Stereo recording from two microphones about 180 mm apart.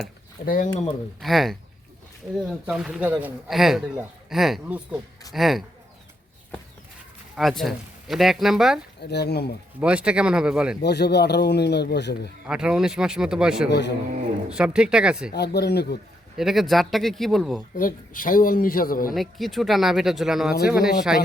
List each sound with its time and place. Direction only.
0.4 s a man's voice: 50° left (ahead or behind)
1.2 s a man's voice: centre (ahead or behind)
7.3 s a man's voice: centre (ahead or behind)
9.0 s speech: 65° left (ahead or behind)
9.8 s a man's voice: 5° right (ahead or behind)
10.8 s speech: 65° left (ahead or behind)
12.5 s a man's voice: 5° right (ahead or behind)
13.7 s speech: 70° left (ahead or behind)
14.5 s a man's voice: 5° right (ahead or behind)
15.3 s speech: 65° left (ahead or behind)
16.4 s a man's voice: centre (ahead or behind)
17.7 s a man's voice: 50° left (ahead or behind)
19.1 s a man's voice: centre (ahead or behind)